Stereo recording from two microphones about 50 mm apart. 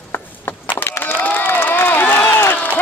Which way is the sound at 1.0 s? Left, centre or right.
Left.